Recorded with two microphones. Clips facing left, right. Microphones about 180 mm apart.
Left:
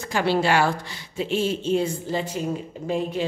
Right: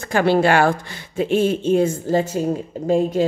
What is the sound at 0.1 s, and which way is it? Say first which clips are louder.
Speech: right 5 dB; 50° right (ahead or behind).